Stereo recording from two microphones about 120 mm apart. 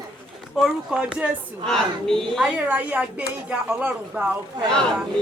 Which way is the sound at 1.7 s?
5° left (ahead or behind).